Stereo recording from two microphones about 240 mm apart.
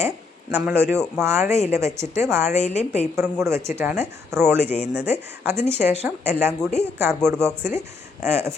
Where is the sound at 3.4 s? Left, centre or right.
Centre.